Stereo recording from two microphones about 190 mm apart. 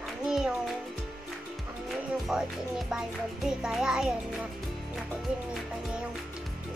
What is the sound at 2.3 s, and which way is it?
A child's voice, 5° right (ahead or behind).